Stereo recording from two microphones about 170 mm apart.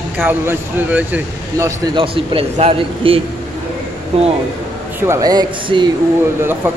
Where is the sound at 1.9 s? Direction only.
30° right (ahead or behind).